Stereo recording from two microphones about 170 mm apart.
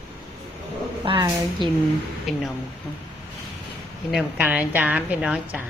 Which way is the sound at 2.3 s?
Centre (ahead or behind).